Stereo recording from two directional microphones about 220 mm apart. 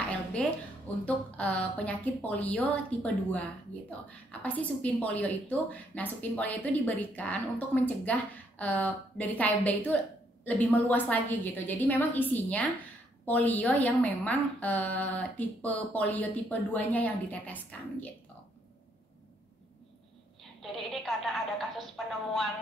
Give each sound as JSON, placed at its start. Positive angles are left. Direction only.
{"t": 0.4, "sound": "a woman's voice", "side_deg": 5}
{"t": 20.7, "sound": "a woman's voice", "side_deg": 0}